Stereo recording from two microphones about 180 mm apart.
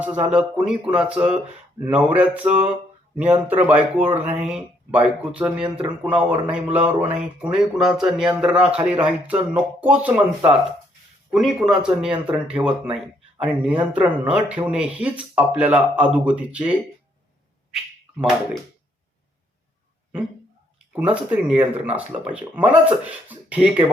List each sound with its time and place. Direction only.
0.0 s speech: 10° right (ahead or behind)
1.8 s speech: 10° right (ahead or behind)
18.2 s speech: centre (ahead or behind)
20.9 s speech: 5° right (ahead or behind)